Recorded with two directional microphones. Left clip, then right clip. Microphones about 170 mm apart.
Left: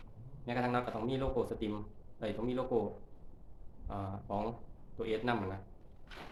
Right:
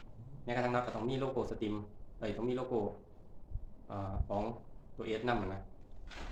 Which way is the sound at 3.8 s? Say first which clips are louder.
Even; 35° left (ahead or behind).